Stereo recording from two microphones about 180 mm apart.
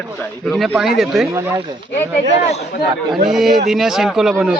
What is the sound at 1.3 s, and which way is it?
Speech, 15° right (ahead or behind).